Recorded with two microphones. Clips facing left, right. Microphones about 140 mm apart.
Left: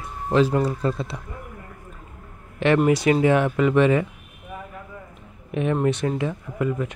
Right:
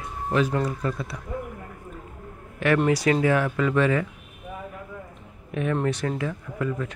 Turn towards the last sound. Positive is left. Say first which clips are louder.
# left 3 dB
turn(degrees=20)  # may be behind; listen again after turning